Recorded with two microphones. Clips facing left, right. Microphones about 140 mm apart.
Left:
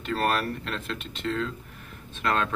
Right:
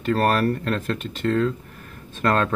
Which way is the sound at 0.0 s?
45° right (ahead or behind).